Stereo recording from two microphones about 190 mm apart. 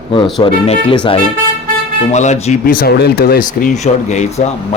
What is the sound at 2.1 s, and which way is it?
Speech, 40° left (ahead or behind).